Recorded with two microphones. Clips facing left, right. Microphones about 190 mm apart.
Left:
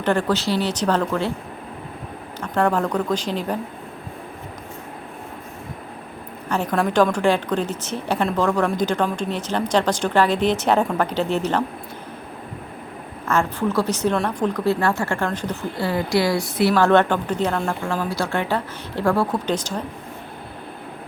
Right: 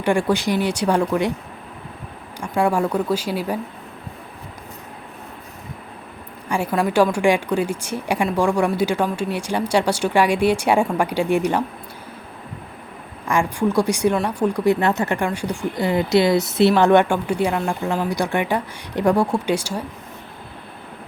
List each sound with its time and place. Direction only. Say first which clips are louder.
0.0 s speech: right 1 dB; 10° right (ahead or behind)
2.4 s speech: right 1 dB; 10° right (ahead or behind)
6.5 s speech: right 1 dB; 10° right (ahead or behind)
13.2 s speech: right 1 dB; 15° right (ahead or behind)